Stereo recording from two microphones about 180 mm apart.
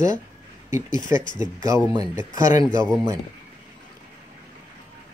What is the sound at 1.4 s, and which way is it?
Speech, 15° right (ahead or behind).